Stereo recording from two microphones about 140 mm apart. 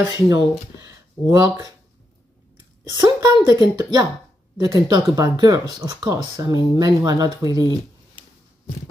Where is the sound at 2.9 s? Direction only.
30° right (ahead or behind).